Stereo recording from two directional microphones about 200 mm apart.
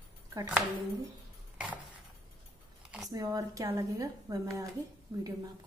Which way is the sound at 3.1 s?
20° right (ahead or behind).